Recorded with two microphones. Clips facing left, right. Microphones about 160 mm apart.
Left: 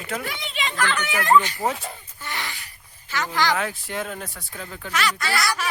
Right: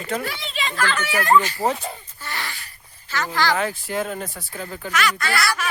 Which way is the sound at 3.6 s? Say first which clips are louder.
Right 4 dB; centre (ahead or behind).